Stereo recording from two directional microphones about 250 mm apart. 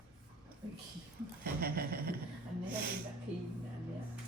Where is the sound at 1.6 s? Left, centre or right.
Right.